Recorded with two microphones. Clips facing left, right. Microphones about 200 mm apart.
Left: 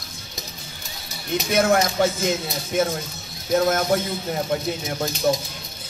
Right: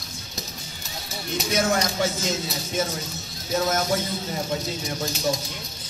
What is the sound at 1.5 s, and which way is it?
Speech, 60° left (ahead or behind).